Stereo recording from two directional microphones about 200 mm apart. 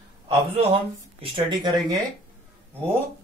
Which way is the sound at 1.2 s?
25° right (ahead or behind).